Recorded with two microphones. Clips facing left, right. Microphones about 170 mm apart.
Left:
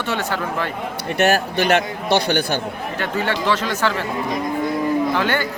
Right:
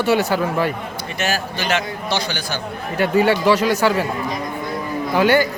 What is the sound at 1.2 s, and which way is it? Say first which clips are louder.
A man's voice: left 6 dB; 60° left (ahead or behind).